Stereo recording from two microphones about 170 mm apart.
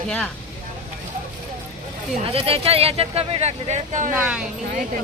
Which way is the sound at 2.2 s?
35° right (ahead or behind).